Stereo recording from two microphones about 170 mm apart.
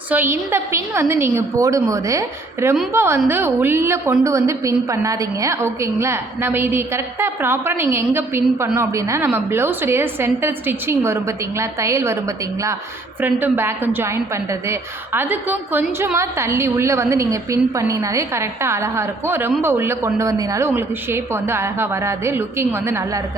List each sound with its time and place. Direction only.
0.1 s a woman's voice: 15° right (ahead or behind)
13.2 s a woman's voice: 10° right (ahead or behind)